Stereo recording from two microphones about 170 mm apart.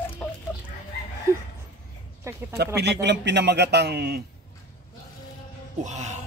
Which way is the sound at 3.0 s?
90° right.